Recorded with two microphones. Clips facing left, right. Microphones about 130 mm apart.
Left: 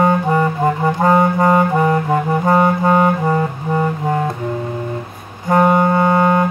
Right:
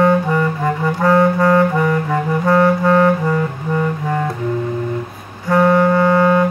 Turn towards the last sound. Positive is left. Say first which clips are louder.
# right 1 dB
turn(degrees=20)  # may be behind; listen again after turning